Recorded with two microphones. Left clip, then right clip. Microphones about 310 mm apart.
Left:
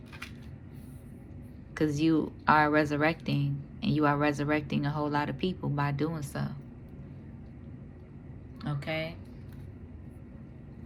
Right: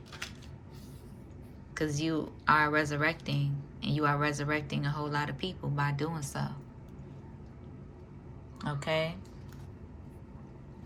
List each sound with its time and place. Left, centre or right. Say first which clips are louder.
1.7 s speech: left 5 dB; centre
8.6 s a woman's voice: right 3 dB; centre